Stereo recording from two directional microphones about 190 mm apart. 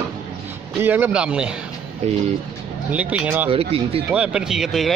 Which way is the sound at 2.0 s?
35° right (ahead or behind).